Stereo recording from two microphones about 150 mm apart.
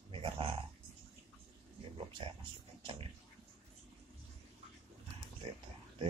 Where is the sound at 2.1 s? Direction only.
35° right (ahead or behind).